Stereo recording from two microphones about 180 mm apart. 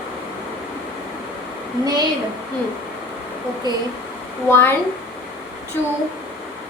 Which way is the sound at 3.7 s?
25° right (ahead or behind).